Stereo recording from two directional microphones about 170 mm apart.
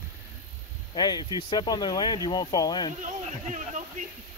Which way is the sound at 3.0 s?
45° right (ahead or behind).